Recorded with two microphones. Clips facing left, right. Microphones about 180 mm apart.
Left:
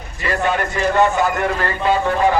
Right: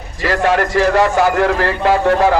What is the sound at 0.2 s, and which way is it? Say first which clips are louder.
A man's voice: right 5 dB; 90° right.